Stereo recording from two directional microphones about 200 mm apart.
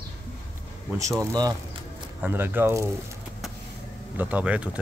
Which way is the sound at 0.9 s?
15° right (ahead or behind).